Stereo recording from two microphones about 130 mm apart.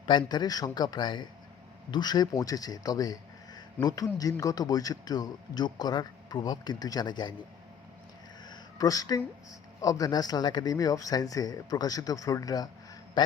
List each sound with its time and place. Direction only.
0.0 s a man's voice: 35° left (ahead or behind)
8.4 s a sound: 30° left (ahead or behind)
9.8 s speech: 30° left (ahead or behind)
13.2 s a man's voice: 40° left (ahead or behind)